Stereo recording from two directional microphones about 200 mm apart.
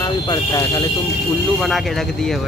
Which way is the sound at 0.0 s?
20° left (ahead or behind).